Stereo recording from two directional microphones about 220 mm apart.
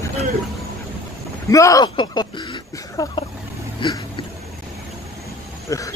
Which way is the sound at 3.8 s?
20° left (ahead or behind).